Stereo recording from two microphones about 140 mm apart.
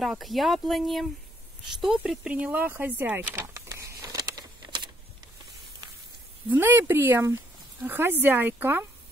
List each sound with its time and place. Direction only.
0.0 s speech: centre (ahead or behind)
1.8 s vehicle: 5° right (ahead or behind); by 4.9 s 35° right (ahead or behind)
6.5 s speech: 15° right (ahead or behind)